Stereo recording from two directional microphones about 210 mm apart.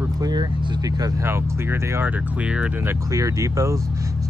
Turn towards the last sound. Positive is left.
turn(degrees=-15)  # may be behind; listen again after turning